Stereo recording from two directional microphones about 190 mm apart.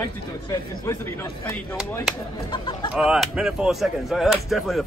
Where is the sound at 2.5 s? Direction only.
25° left (ahead or behind).